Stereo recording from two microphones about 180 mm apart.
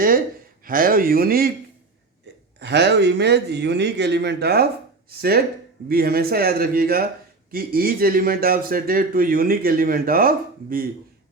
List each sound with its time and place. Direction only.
0.6 s speech: 50° right (ahead or behind)
2.6 s a man's voice: 70° right (ahead or behind); by 10.8 s 55° right (ahead or behind)